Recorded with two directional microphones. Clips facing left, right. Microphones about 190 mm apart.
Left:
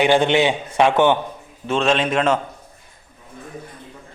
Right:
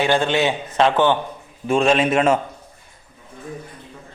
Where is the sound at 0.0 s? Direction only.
15° left (ahead or behind).